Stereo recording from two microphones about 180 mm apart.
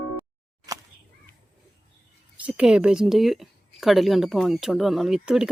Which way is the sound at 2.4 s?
5° right (ahead or behind).